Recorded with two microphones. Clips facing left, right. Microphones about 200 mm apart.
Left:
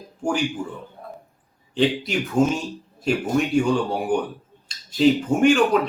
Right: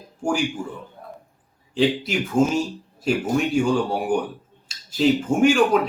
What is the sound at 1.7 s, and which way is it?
A man's voice, centre (ahead or behind).